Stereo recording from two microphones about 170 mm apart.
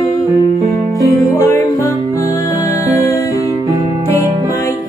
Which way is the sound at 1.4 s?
20° left (ahead or behind).